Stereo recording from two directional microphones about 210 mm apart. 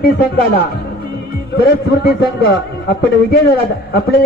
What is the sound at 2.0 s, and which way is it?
A man's voice, 50° left (ahead or behind).